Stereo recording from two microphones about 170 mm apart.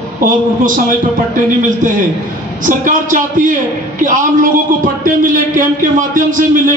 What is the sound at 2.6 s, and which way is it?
A man's voice, 50° right (ahead or behind).